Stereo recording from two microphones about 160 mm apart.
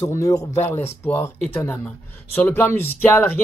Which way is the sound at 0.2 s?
20° left (ahead or behind).